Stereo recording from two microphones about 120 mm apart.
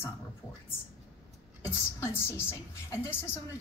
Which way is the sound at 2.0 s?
20° left (ahead or behind).